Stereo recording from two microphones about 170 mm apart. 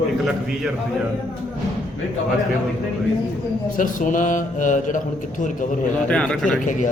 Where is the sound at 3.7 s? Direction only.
50° left (ahead or behind).